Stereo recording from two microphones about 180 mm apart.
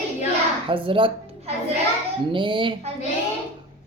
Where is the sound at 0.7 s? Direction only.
30° right (ahead or behind).